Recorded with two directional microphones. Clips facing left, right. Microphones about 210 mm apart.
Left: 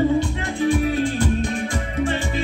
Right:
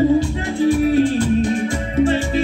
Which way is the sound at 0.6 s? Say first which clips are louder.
Right 5 dB; 30° right (ahead or behind).